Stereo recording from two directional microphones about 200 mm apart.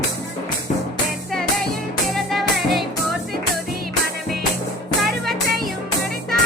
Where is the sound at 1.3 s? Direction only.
Centre (ahead or behind).